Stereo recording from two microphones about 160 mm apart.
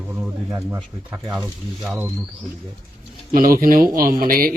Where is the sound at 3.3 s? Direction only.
60° right (ahead or behind).